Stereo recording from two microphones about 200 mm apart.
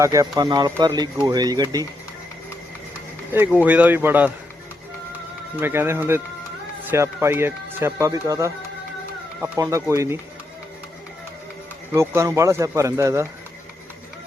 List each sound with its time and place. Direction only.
0.0 s speech: 15° right (ahead or behind)
3.3 s speech: 10° right (ahead or behind)
5.5 s speech: 10° right (ahead or behind)
11.9 s speech: 15° right (ahead or behind)